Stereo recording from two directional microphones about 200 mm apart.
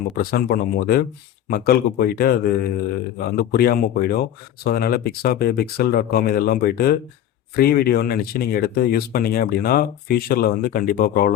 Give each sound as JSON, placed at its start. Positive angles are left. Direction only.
{"t": 0.2, "sound": "speech", "side_deg": 50}